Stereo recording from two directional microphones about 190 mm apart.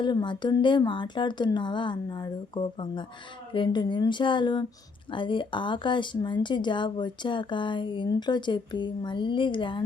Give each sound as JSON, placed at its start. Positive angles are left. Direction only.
{"t": 0.0, "sound": "speech", "side_deg": 25}